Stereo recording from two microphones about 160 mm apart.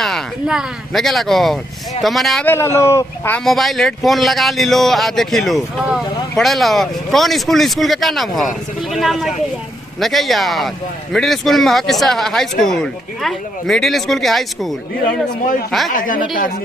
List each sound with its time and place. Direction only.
0.0 s speech: centre (ahead or behind)
2.4 s speech: 15° left (ahead or behind)
15.9 s a woman's voice: 60° left (ahead or behind)